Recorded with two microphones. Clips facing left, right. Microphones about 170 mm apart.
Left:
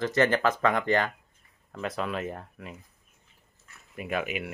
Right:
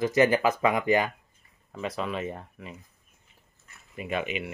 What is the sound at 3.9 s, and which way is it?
Speech, 5° left (ahead or behind).